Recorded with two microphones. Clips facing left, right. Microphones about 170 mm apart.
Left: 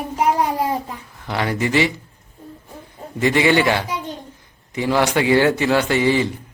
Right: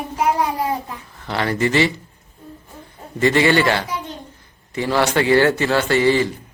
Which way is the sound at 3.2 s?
15° left (ahead or behind).